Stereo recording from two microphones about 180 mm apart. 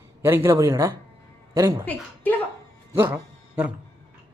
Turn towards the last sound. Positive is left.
turn(degrees=-10)  # may be behind; listen again after turning